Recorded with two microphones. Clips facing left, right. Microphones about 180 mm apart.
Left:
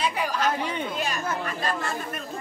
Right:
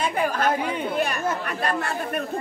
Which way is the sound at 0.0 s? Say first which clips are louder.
Right 3 dB; 50° right (ahead or behind).